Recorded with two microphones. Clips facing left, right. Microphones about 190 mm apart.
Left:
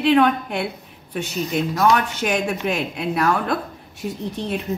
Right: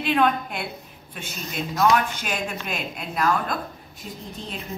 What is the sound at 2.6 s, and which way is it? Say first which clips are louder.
A woman's voice: left 8 dB; 65° left (ahead or behind).